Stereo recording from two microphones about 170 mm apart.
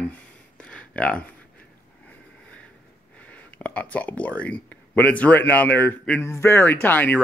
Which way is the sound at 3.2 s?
10° left (ahead or behind).